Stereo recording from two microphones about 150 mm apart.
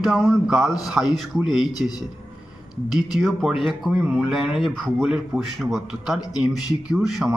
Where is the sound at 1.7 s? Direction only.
25° left (ahead or behind).